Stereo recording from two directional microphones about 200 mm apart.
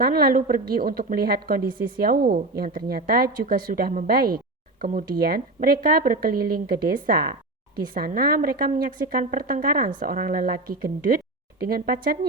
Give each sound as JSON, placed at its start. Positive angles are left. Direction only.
{"t": 0.0, "sound": "a woman's voice", "side_deg": -50}